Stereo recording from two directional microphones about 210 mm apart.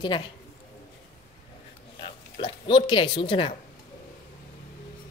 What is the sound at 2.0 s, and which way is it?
Speech, 20° left (ahead or behind).